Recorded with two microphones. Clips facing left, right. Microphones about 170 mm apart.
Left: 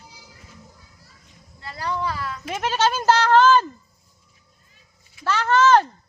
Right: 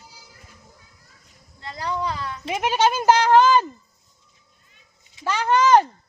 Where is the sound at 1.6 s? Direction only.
20° right (ahead or behind).